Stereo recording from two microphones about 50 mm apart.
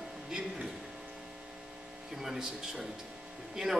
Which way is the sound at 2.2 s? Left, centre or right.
Centre.